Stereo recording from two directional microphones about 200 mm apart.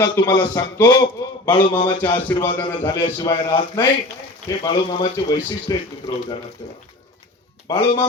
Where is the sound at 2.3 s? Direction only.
10° left (ahead or behind).